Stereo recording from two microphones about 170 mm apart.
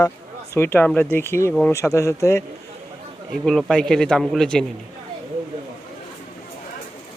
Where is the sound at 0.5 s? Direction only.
15° left (ahead or behind).